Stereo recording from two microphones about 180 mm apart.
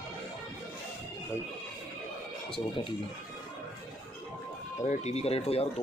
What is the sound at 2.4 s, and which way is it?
Speech, 30° left (ahead or behind).